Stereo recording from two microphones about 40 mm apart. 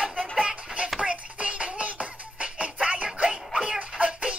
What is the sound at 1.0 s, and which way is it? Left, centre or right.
Music, right.